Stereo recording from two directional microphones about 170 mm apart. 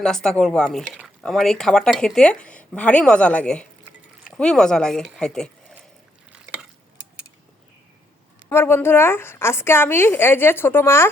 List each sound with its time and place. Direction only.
0.0 s speech: 5° left (ahead or behind)
6.4 s stir: 5° right (ahead or behind)
8.4 s a woman's voice: 15° left (ahead or behind)